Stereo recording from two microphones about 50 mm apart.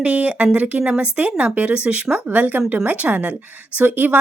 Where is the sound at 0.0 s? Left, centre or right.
Right.